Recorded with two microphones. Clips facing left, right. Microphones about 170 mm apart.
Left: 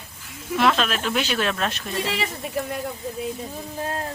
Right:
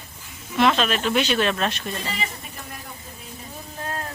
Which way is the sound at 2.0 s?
90° left.